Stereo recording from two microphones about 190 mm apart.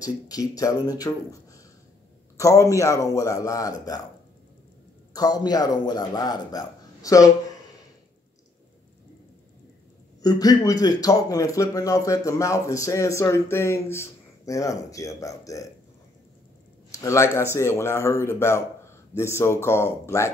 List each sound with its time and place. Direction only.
0.0 s a man's voice: 20° left (ahead or behind)
5.1 s a man's voice: 20° left (ahead or behind)
10.2 s speech: 20° left (ahead or behind)
16.9 s speech: 15° left (ahead or behind)